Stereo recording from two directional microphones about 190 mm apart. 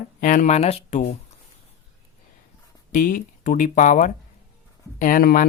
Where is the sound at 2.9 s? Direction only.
45° left (ahead or behind).